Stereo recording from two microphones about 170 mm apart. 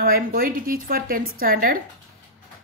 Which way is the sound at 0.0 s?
60° right (ahead or behind).